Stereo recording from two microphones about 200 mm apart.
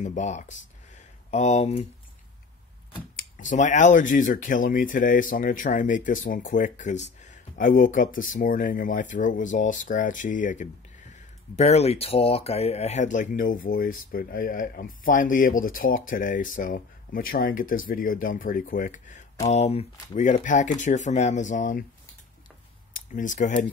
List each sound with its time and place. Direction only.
0.0 s speech: 35° left (ahead or behind)
3.3 s speech: 40° left (ahead or behind)
22.9 s speech: 40° left (ahead or behind)